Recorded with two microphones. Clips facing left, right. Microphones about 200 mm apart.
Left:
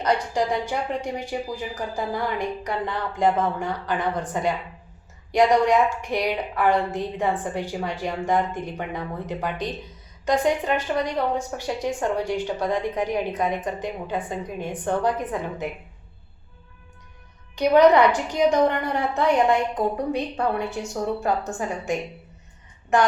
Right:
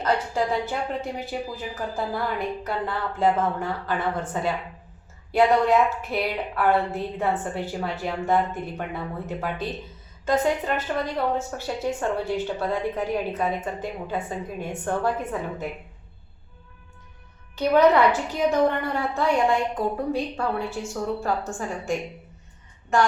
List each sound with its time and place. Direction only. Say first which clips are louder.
0.0 s a woman's voice: left 1 dB; 15° left (ahead or behind)
17.5 s a woman's voice: left 2 dB; 15° left (ahead or behind)